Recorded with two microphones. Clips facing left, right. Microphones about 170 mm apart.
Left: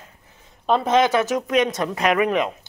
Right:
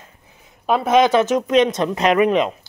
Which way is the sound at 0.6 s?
10° right (ahead or behind).